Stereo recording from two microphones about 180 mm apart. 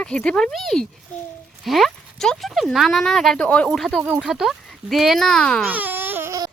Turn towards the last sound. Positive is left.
turn(degrees=-15)  # may be behind; listen again after turning